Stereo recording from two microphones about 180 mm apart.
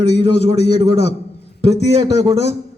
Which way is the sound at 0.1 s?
70° left (ahead or behind).